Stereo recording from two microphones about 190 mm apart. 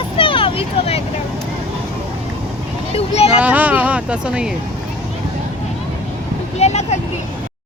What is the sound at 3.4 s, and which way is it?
Vehicle, 10° right (ahead or behind).